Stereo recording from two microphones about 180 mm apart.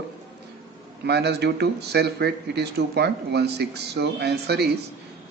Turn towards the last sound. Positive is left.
turn(degrees=-65)  # may be behind; listen again after turning